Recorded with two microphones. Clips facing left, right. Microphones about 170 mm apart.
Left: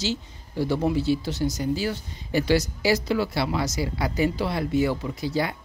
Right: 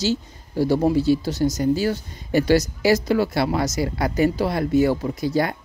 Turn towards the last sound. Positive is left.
turn(degrees=-45)  # may be behind; listen again after turning